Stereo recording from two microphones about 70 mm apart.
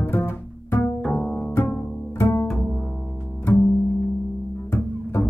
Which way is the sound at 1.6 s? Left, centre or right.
Centre.